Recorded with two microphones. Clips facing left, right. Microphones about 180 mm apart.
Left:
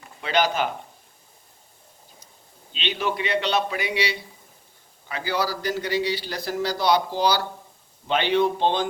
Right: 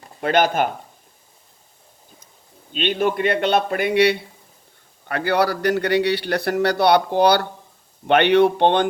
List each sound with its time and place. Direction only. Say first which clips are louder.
0.2 s a man's voice: right 5 dB; 50° right (ahead or behind)
2.7 s a man's voice: right 7 dB; 50° right (ahead or behind); by 8.9 s 65° right (ahead or behind)